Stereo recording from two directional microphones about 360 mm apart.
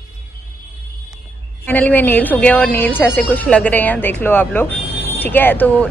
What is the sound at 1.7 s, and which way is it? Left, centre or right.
A woman's voice, centre.